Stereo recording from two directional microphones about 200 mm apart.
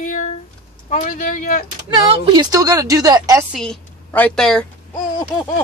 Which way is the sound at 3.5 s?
Centre (ahead or behind).